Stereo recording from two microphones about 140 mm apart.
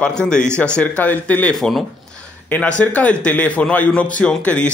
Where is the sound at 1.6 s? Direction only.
Centre (ahead or behind).